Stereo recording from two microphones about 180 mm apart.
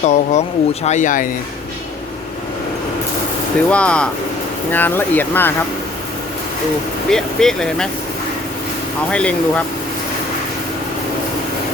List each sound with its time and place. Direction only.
0.0 s speech: 40° left (ahead or behind)
3.7 s speech: 5° left (ahead or behind)
7.1 s speech: 5° left (ahead or behind)
9.1 s speech: 5° left (ahead or behind)